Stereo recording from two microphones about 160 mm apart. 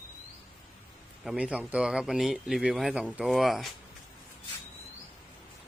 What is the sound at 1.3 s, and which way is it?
Speech, 5° right (ahead or behind).